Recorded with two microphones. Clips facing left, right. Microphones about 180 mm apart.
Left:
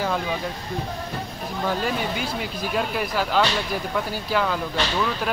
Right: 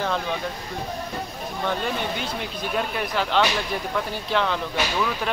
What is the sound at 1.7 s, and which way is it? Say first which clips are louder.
Speech: left 1 dB; 5° left (ahead or behind).